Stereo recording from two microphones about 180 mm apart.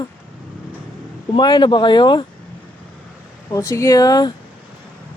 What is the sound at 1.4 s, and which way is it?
Speech, 25° left (ahead or behind).